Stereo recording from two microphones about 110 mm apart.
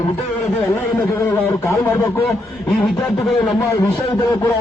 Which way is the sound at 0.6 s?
25° left (ahead or behind).